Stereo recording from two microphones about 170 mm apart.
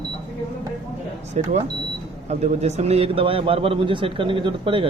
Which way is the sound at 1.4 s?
45° right (ahead or behind).